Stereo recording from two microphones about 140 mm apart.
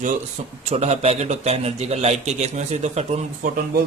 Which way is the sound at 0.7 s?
50° right (ahead or behind).